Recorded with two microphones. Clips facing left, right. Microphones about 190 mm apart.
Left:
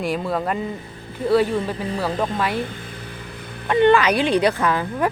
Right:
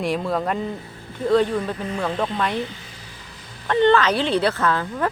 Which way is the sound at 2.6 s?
55° left (ahead or behind).